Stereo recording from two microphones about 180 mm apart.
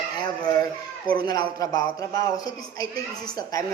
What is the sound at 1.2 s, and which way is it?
Speech, 20° left (ahead or behind).